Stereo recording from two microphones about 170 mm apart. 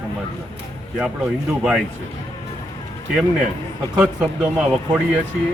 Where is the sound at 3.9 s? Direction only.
5° right (ahead or behind).